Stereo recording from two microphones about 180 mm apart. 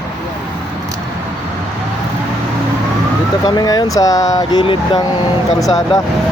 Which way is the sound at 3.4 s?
20° left (ahead or behind).